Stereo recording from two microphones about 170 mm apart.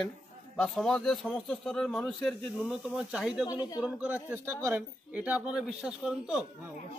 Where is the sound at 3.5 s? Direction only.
25° left (ahead or behind).